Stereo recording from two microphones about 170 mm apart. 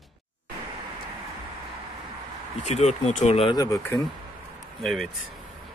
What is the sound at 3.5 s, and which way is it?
Speech, 20° left (ahead or behind).